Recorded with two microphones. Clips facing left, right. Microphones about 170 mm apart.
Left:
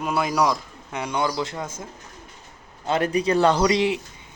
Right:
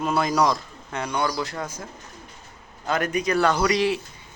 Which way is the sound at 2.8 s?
30° left (ahead or behind).